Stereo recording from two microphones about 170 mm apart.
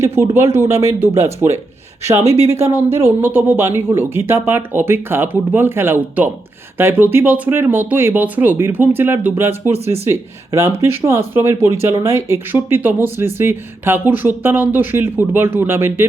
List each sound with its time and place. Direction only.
0.0 s speech: 15° right (ahead or behind)